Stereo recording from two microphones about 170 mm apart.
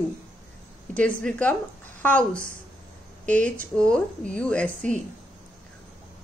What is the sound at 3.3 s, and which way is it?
Speech, 45° right (ahead or behind).